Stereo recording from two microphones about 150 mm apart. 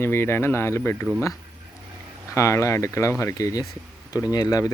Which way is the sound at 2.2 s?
20° left (ahead or behind).